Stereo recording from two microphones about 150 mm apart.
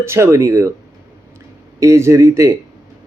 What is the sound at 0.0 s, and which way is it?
Speech, 20° right (ahead or behind).